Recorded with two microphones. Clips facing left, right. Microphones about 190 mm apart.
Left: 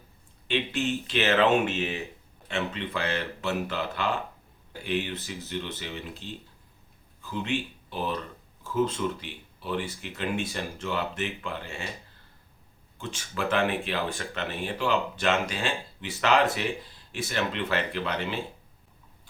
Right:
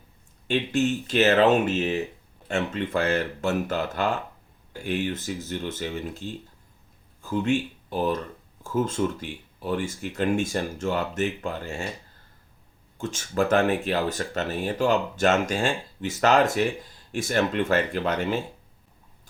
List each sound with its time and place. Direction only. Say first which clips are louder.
0.4 s speech: right 5 dB; 45° right (ahead or behind)
13.0 s speech: right 7 dB; 45° right (ahead or behind)